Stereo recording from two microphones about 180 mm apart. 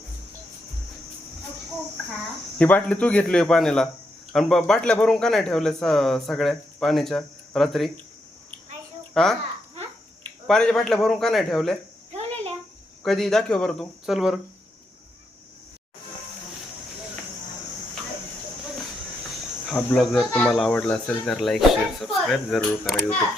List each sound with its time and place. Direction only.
2.6 s speech: 10° left (ahead or behind)
9.2 s speech: centre (ahead or behind)
10.4 s speech: 5° left (ahead or behind)
12.1 s cricket: 35° right (ahead or behind)
13.0 s speech: centre (ahead or behind)
19.7 s speech: centre (ahead or behind)